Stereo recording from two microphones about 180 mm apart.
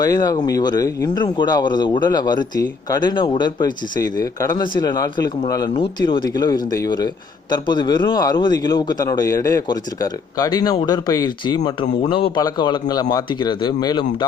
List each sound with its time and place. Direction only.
0.0 s a man's voice: 20° left (ahead or behind)